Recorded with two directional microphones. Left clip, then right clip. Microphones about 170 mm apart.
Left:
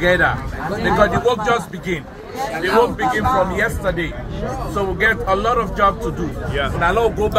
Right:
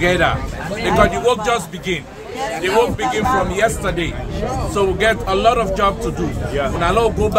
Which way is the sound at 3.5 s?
25° right (ahead or behind).